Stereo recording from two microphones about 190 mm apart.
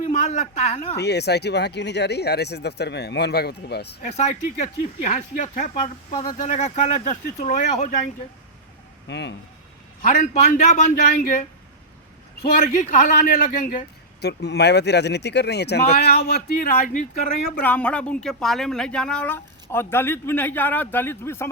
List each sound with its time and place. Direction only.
0.0 s a man's voice: 35° left (ahead or behind)
0.9 s speech: 60° left (ahead or behind)
4.0 s speech: 40° left (ahead or behind)
5.8 s speech: 30° left (ahead or behind)
6.2 s speech: 40° left (ahead or behind)
9.0 s speech: 65° left (ahead or behind)
10.1 s a man's voice: 45° left (ahead or behind)
12.4 s a man's voice: 45° left (ahead or behind)
14.2 s speech: 60° left (ahead or behind); by 17.1 s 45° left (ahead or behind)
17.6 s speech: 10° left (ahead or behind)